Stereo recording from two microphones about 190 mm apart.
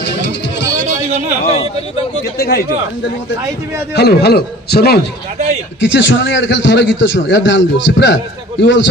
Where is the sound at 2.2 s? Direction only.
55° left (ahead or behind).